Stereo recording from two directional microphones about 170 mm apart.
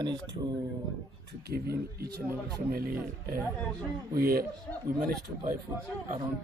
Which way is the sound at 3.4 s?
5° left (ahead or behind).